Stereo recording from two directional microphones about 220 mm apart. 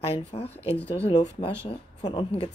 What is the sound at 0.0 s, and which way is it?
Speech, 25° left (ahead or behind).